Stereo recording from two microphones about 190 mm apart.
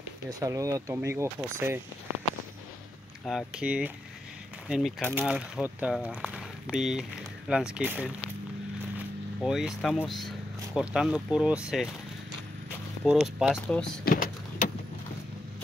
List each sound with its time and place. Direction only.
0.4 s speech: 15° right (ahead or behind)
3.3 s speech: 5° right (ahead or behind)
9.4 s speech: centre (ahead or behind)
13.0 s speech: centre (ahead or behind)
14.0 s power windows: 45° left (ahead or behind)